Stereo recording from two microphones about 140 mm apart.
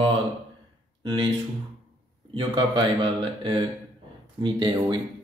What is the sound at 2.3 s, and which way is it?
Speech, 35° right (ahead or behind).